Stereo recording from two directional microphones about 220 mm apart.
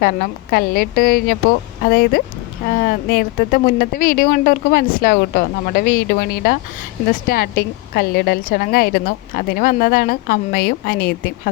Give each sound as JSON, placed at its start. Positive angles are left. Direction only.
{"t": 0.0, "sound": "a woman's voice", "side_deg": 40}